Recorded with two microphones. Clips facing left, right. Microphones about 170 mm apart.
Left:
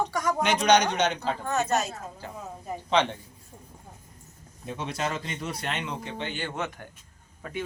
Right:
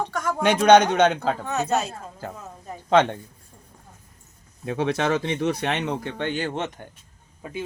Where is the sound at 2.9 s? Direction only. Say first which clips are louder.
Right 6 dB; 50° right (ahead or behind).